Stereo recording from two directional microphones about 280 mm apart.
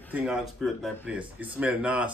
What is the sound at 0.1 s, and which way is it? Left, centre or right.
Speech, centre.